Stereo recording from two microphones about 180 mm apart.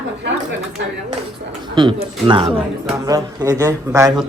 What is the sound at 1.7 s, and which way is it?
A man's voice, 25° right (ahead or behind).